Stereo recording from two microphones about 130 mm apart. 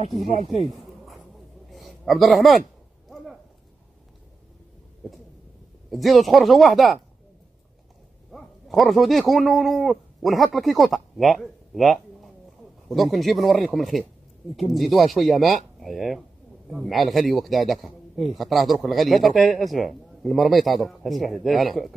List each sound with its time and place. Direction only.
0.2 s speech: 55° right (ahead or behind)
0.7 s a sound: centre (ahead or behind)
5.0 s a sound: 5° right (ahead or behind)
5.9 s a man's voice: centre (ahead or behind)
8.3 s bow-wow: centre (ahead or behind)
9.3 s a man's voice: centre (ahead or behind)